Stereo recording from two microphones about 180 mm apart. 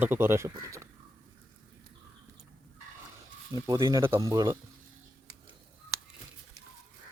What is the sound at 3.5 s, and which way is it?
Speech, 15° right (ahead or behind).